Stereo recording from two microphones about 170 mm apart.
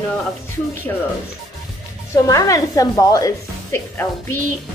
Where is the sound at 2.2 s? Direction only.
20° left (ahead or behind).